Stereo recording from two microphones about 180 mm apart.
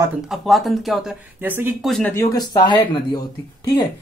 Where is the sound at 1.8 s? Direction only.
5° left (ahead or behind).